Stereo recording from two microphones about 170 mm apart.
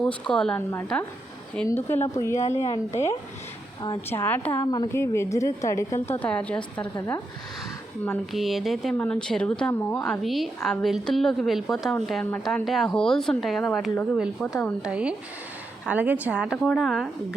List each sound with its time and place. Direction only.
0.0 s a woman's voice: 5° left (ahead or behind)
1.6 s a woman's voice: 15° left (ahead or behind)
4.1 s a woman's voice: 10° left (ahead or behind)
8.3 s a woman's voice: centre (ahead or behind)
10.1 s a woman's voice: centre (ahead or behind)
14.8 s a woman's voice: 5° right (ahead or behind)